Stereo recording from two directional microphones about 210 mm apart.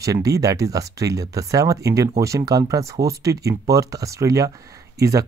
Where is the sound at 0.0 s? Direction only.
15° right (ahead or behind).